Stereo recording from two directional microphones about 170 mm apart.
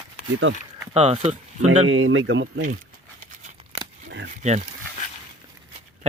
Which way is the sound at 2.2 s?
90° right.